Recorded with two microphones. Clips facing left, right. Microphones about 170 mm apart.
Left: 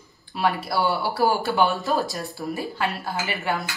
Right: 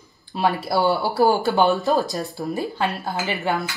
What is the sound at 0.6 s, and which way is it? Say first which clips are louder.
Speech: right 4 dB; 25° right (ahead or behind).